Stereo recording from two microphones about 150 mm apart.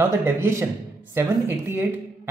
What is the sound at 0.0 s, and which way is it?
A man's voice, 15° right (ahead or behind).